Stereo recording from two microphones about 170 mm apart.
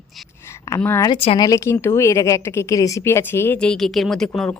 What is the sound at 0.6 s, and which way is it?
Speech, 15° left (ahead or behind).